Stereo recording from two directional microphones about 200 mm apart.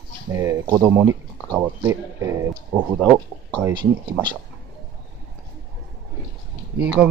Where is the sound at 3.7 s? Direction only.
25° right (ahead or behind).